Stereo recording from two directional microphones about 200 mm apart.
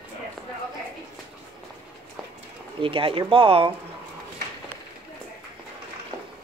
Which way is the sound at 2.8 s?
25° right (ahead or behind).